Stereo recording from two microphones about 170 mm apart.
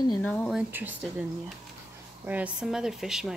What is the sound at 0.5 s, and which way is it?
Speech, 10° right (ahead or behind).